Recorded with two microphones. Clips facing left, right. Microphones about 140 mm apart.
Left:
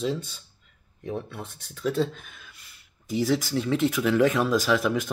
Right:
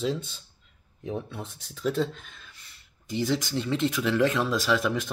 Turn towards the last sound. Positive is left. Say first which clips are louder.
# left 2 dB
turn(degrees=5)  # may be behind; listen again after turning